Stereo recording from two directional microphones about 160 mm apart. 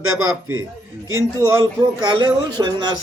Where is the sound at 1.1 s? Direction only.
20° right (ahead or behind).